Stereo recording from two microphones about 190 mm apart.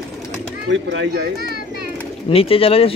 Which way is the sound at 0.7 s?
70° right (ahead or behind).